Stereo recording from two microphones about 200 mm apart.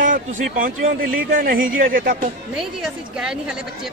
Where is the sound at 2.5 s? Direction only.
5° right (ahead or behind).